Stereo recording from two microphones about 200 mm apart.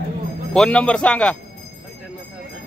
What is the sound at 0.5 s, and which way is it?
Speech, 5° left (ahead or behind).